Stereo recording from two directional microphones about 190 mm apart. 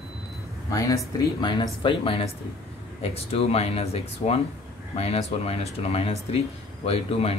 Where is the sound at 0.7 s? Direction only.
15° left (ahead or behind).